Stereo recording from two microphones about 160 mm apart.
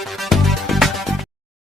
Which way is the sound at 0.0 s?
Centre (ahead or behind).